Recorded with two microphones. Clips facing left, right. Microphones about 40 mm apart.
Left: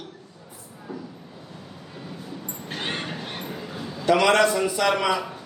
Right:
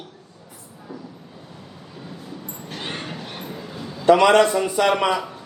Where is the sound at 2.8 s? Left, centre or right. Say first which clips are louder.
Left 1 dB; left.